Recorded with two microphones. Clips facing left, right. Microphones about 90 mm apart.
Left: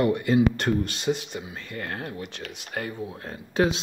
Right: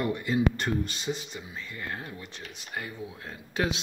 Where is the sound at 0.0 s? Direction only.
65° left (ahead or behind).